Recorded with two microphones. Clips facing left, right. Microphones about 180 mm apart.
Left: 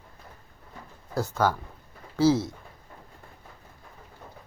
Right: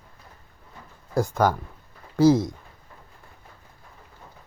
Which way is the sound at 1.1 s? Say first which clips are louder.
Right 4 dB; 15° right (ahead or behind).